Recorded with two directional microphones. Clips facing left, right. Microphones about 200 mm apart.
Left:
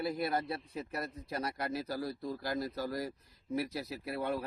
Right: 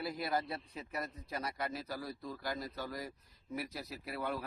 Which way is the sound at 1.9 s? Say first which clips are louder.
Left 5 dB; 35° left (ahead or behind).